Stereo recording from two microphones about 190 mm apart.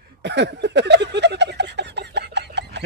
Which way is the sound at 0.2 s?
65° right (ahead or behind).